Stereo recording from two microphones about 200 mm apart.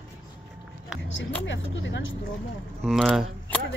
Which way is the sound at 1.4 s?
65° left (ahead or behind).